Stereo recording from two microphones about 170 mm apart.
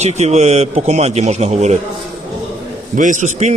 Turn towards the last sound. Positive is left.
turn(degrees=-45)  # may be behind; listen again after turning